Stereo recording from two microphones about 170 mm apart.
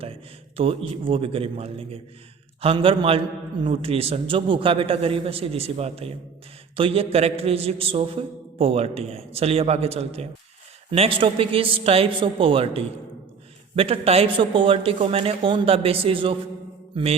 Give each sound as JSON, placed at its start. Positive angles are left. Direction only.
{"t": 0.0, "sound": "a sound", "side_deg": -35}
{"t": 1.0, "sound": "a man's voice", "side_deg": -35}
{"t": 16.9, "sound": "mantra", "side_deg": -35}